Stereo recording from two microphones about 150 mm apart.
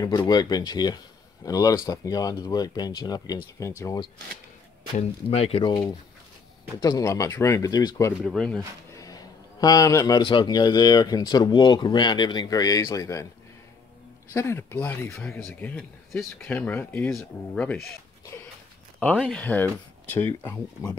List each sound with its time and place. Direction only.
0.0 s a man's voice: 30° left (ahead or behind)
4.9 s speech: 45° left (ahead or behind)
6.8 s a man's voice: 25° left (ahead or behind)
8.2 s speech: 5° left (ahead or behind)
8.9 s a man's voice: 25° left (ahead or behind)
14.3 s speech: 15° left (ahead or behind)
18.9 s speech: 10° left (ahead or behind)